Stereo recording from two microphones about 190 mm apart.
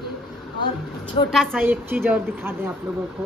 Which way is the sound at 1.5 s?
10° right (ahead or behind).